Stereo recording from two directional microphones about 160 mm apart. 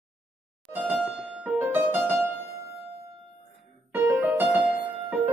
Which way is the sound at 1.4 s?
15° right (ahead or behind).